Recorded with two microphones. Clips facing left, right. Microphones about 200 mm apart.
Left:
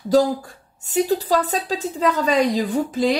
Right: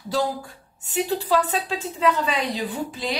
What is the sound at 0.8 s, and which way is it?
Speech, 40° left (ahead or behind).